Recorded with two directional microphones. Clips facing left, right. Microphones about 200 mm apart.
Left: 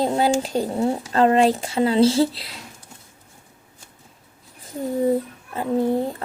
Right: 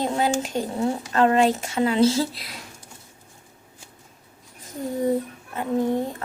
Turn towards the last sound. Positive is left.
turn(degrees=30)  # may be behind; listen again after turning